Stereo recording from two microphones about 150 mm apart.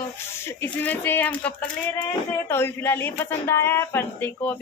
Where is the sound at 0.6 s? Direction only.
10° left (ahead or behind).